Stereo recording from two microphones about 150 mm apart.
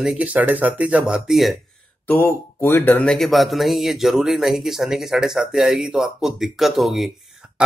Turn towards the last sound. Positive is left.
turn(degrees=0)  # may be behind; listen again after turning